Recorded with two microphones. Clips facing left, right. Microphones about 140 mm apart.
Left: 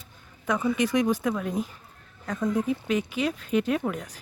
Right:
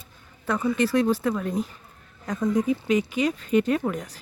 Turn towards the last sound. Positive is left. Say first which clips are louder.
# right 3 dB
turn(degrees=5)  # may be behind; listen again after turning